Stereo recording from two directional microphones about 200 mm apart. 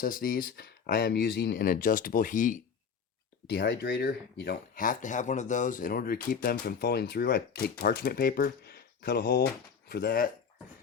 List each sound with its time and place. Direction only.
0.0 s speech: 45° left (ahead or behind)
3.4 s speech: 55° left (ahead or behind)